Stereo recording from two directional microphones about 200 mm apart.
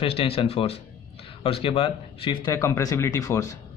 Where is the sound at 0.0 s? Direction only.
30° left (ahead or behind).